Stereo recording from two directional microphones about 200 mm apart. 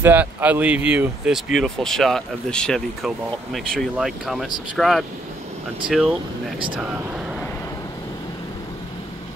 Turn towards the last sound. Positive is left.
turn(degrees=10)  # may be behind; listen again after turning